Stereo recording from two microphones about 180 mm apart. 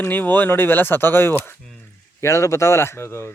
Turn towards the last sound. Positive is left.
turn(degrees=15)  # may be behind; listen again after turning